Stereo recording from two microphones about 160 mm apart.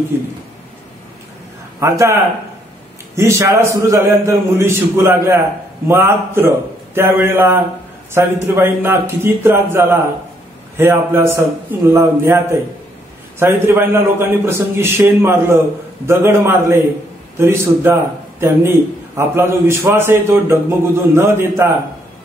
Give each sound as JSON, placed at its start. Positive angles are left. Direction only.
{"t": 0.1, "sound": "a man's voice", "side_deg": -15}
{"t": 1.8, "sound": "a man's voice", "side_deg": -20}
{"t": 3.2, "sound": "a man's voice", "side_deg": -20}